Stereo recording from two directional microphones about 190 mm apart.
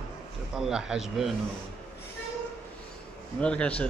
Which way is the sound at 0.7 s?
5° right (ahead or behind).